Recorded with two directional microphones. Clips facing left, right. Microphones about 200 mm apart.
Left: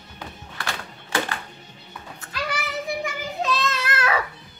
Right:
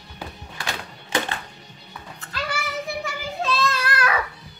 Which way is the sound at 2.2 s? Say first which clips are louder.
Even; 15° left (ahead or behind).